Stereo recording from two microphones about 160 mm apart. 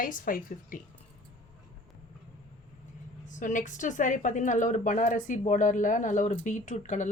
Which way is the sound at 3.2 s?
55° left (ahead or behind).